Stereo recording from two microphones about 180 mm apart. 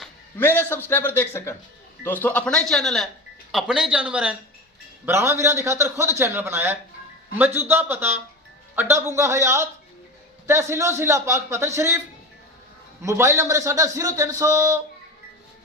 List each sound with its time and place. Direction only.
0.3 s a man's voice: 10° left (ahead or behind); by 11.9 s 15° right (ahead or behind)
13.0 s a man's voice: 15° right (ahead or behind)